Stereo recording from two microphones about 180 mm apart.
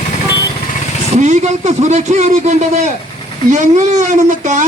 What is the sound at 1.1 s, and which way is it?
A man's voice, 40° right (ahead or behind).